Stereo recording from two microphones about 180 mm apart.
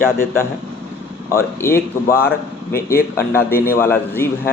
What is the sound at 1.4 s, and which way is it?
Speech, 15° left (ahead or behind).